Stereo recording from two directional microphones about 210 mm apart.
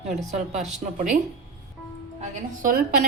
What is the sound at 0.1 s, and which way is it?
Speech, 30° right (ahead or behind).